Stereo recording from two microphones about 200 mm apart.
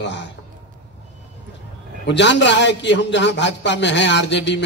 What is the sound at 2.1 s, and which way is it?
A man's voice, 60° left (ahead or behind).